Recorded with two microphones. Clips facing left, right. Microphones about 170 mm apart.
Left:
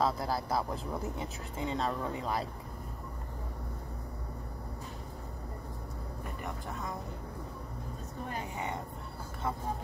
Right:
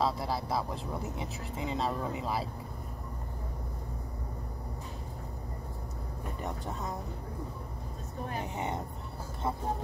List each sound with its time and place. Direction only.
0.0 s speech: centre (ahead or behind)